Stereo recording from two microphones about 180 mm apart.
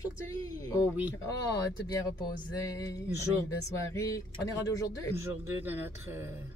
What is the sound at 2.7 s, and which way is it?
A woman's voice, 20° left (ahead or behind).